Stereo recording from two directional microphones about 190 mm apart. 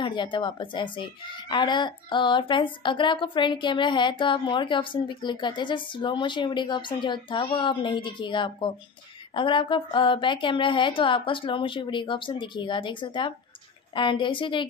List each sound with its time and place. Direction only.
0.0 s a child's voice: 25° left (ahead or behind)